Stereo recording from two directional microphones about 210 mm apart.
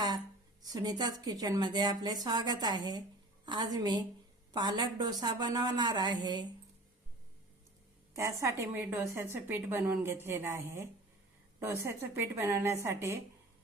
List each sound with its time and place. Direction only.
0.6 s a woman's voice: 20° right (ahead or behind)
8.1 s a woman's voice: 15° right (ahead or behind)